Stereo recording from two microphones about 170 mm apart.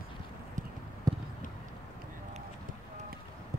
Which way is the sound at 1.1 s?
20° right (ahead or behind).